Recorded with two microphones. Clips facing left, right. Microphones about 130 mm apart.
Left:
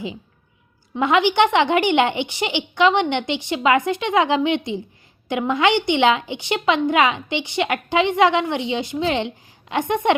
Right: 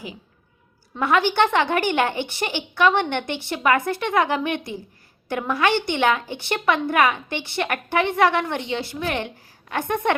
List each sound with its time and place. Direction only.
0.9 s a woman's voice: 20° left (ahead or behind)